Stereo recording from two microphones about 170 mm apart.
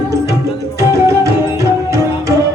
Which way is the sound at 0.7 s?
20° right (ahead or behind).